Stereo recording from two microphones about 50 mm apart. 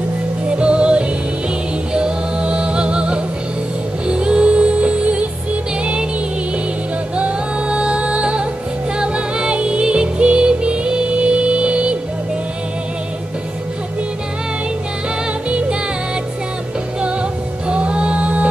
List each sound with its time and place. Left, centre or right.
0.5 s music: right
7.2 s music: right
17.0 s music: right